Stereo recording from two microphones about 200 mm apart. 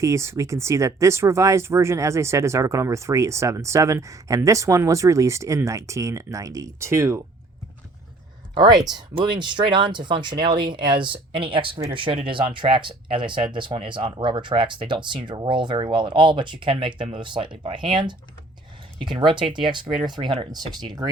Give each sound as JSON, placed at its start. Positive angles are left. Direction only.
{"t": 0.0, "sound": "speech", "side_deg": -15}
{"t": 8.5, "sound": "speech", "side_deg": -20}